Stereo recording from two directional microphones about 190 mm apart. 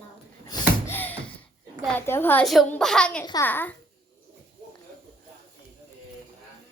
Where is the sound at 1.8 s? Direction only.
10° left (ahead or behind).